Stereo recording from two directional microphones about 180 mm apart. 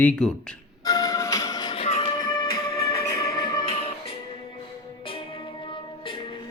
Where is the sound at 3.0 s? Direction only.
20° left (ahead or behind).